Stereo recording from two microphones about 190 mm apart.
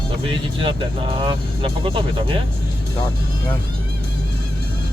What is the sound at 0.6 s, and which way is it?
Speech, 25° right (ahead or behind).